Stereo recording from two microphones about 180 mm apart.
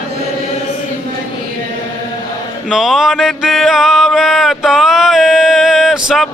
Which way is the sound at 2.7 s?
Centre (ahead or behind).